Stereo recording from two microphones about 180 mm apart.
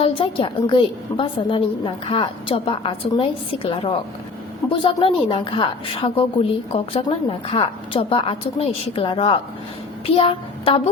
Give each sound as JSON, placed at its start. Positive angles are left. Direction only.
{"t": 0.0, "sound": "a woman's voice", "side_deg": 30}